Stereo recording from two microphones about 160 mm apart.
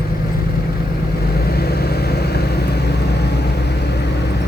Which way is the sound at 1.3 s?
75° left (ahead or behind).